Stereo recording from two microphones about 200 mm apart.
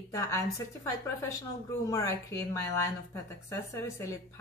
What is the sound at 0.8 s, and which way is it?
Speech, 15° left (ahead or behind).